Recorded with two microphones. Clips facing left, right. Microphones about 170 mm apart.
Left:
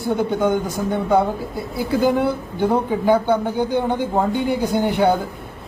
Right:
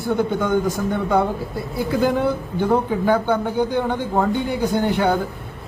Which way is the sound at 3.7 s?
10° left (ahead or behind).